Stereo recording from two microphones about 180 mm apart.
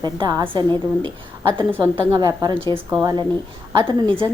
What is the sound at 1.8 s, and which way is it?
Speech, 20° right (ahead or behind).